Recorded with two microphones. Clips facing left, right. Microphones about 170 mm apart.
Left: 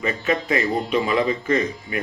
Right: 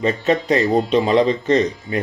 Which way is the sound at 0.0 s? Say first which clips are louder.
Right 5 dB; 40° right (ahead or behind).